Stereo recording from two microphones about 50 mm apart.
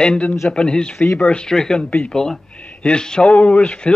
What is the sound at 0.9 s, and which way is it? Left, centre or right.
Speech, left.